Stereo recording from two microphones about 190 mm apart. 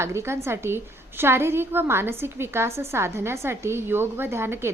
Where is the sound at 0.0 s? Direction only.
15° right (ahead or behind).